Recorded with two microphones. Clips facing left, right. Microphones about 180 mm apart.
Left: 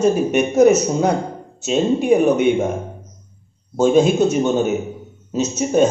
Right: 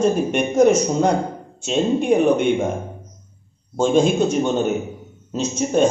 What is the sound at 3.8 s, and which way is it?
A man's voice, 5° left (ahead or behind).